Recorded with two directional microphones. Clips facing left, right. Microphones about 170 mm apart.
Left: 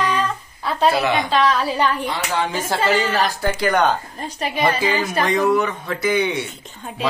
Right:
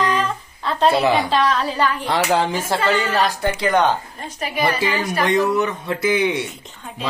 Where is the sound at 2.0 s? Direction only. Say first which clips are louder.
Right 5 dB; 75° right (ahead or behind).